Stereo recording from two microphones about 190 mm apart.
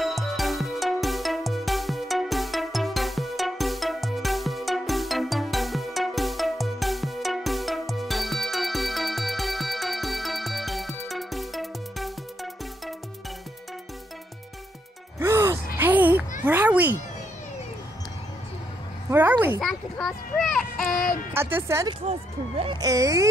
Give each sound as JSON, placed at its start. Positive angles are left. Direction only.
{"t": 0.0, "sound": "music", "side_deg": 0}
{"t": 15.1, "sound": "gasp", "side_deg": -15}
{"t": 16.4, "sound": "cat", "side_deg": -10}
{"t": 19.0, "sound": "a sound", "side_deg": -10}
{"t": 19.6, "sound": "child singing", "side_deg": 0}
{"t": 21.3, "sound": "speech", "side_deg": -10}